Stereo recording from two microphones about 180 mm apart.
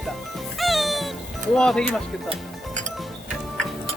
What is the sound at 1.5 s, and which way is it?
Speech, 5° left (ahead or behind).